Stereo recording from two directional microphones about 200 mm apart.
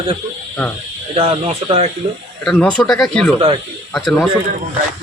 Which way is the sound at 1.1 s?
30° right (ahead or behind).